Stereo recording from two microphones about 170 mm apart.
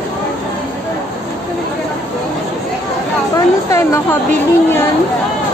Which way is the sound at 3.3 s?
20° left (ahead or behind).